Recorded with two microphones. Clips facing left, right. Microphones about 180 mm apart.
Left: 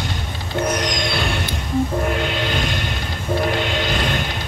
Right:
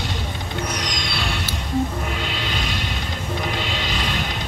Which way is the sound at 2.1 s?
50° left (ahead or behind).